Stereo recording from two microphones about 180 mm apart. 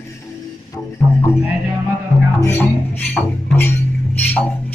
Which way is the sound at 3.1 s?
10° left (ahead or behind).